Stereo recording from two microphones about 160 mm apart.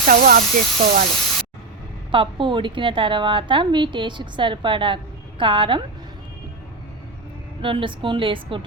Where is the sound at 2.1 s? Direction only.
30° right (ahead or behind).